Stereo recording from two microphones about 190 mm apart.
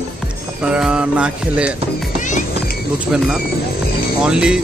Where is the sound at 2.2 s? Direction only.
40° left (ahead or behind).